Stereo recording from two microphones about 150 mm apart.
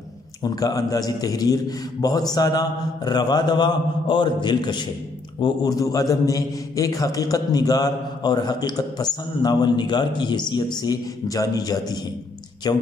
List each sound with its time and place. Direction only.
0.4 s a man's voice: 25° left (ahead or behind)